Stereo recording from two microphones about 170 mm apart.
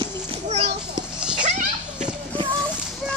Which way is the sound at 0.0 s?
35° right (ahead or behind).